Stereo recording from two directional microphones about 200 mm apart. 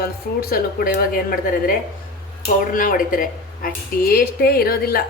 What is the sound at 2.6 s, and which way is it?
A woman's voice, 45° left (ahead or behind).